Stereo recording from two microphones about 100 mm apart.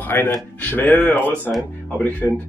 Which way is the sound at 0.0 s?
20° left (ahead or behind).